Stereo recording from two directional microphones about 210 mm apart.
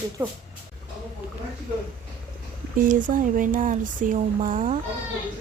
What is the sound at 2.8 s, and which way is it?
Speech, 40° right (ahead or behind).